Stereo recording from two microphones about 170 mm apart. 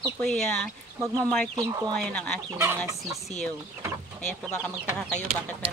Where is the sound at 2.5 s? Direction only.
15° right (ahead or behind).